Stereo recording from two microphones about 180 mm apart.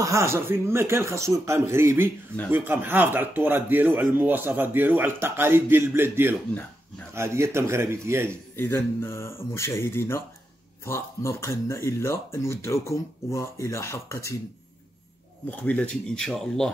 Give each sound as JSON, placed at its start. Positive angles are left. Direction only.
{"t": 0.0, "sound": "speech", "side_deg": -15}
{"t": 8.5, "sound": "speech", "side_deg": 10}
{"t": 15.5, "sound": "speech", "side_deg": 10}